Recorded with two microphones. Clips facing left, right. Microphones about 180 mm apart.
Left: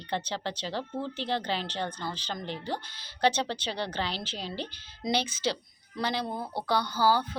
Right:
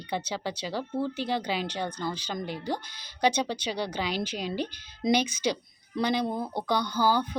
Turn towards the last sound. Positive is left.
turn(degrees=-15)  # may be behind; listen again after turning